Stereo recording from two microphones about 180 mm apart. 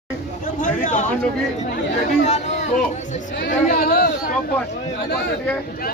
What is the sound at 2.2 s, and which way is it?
Speech, 40° left (ahead or behind).